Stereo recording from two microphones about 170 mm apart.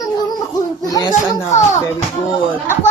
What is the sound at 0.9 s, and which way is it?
Speech, 20° left (ahead or behind).